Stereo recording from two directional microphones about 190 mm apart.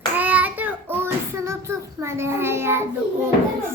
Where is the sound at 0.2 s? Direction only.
10° right (ahead or behind).